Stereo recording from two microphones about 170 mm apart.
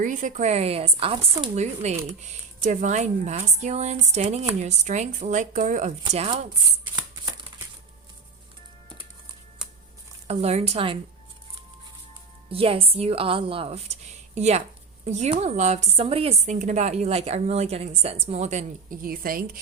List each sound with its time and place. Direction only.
0.0 s a woman's voice: 50° right (ahead or behind)
10.2 s a woman's voice: 40° right (ahead or behind)
12.5 s a woman's voice: 35° right (ahead or behind); by 19.5 s 60° right (ahead or behind)